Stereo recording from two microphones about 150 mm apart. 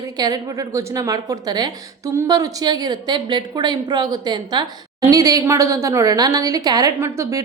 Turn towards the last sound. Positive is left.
turn(degrees=-20)  # may be behind; listen again after turning